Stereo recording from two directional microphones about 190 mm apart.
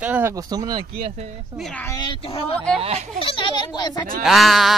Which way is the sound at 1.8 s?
20° left (ahead or behind).